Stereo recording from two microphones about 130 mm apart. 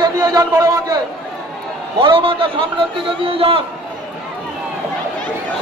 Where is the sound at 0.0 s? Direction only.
30° right (ahead or behind).